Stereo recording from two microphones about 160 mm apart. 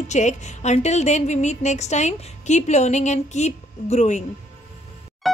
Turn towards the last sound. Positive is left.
turn(degrees=45)  # may be behind; listen again after turning